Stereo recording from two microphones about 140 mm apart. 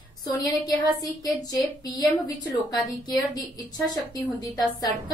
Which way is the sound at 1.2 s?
25° left (ahead or behind).